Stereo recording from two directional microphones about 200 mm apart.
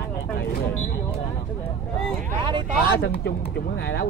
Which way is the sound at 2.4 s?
25° right (ahead or behind).